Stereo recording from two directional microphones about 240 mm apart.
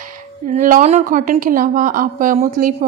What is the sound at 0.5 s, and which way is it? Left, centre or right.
A woman's voice, right.